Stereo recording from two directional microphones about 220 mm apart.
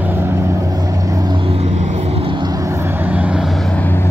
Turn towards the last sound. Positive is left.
turn(degrees=-5)  # may be behind; listen again after turning